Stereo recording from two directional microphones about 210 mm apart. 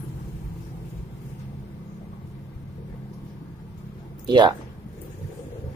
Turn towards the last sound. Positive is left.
turn(degrees=-20)  # may be behind; listen again after turning